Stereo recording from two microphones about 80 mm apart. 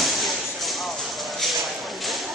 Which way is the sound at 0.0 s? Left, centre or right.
Centre.